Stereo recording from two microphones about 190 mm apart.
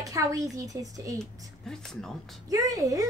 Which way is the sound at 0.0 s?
15° right (ahead or behind).